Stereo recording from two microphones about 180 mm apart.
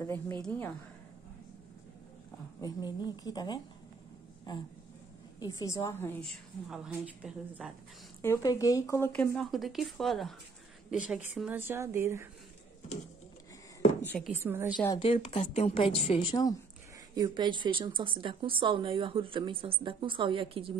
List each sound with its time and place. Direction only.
0.0 s speech: 15° left (ahead or behind)
2.6 s a woman's voice: 25° left (ahead or behind)
6.7 s a woman's voice: 5° right (ahead or behind)
8.2 s a woman's voice: 15° left (ahead or behind); by 12.3 s 15° right (ahead or behind)
14.2 s speech: 10° right (ahead or behind)
15.0 s a woman's voice: 35° left (ahead or behind)
17.1 s speech: 25° right (ahead or behind)